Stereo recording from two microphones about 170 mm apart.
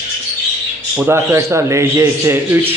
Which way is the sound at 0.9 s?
10° right (ahead or behind).